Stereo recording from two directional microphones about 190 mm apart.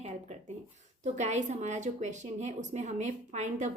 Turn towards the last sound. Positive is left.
turn(degrees=-40)  # may be behind; listen again after turning